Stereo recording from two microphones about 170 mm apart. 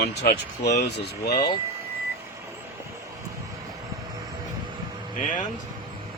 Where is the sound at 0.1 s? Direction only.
75° left (ahead or behind).